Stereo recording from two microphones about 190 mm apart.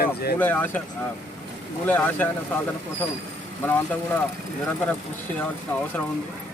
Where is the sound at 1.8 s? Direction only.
10° left (ahead or behind).